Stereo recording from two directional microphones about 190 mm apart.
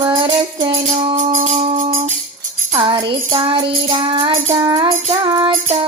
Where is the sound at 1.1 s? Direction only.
45° right (ahead or behind).